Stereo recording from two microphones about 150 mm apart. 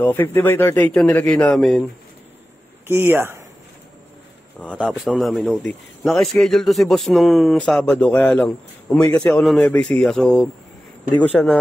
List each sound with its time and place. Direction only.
0.0 s speech: 15° left (ahead or behind)
2.9 s speech: 15° right (ahead or behind)
4.6 s a man's voice: centre (ahead or behind)